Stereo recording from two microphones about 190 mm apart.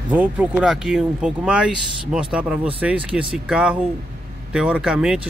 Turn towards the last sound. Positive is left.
turn(degrees=-5)  # may be behind; listen again after turning